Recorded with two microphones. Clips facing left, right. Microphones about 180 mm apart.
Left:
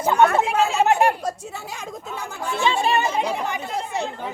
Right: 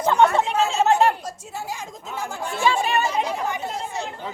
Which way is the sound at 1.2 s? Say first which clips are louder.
Left 4 dB; 65° left (ahead or behind).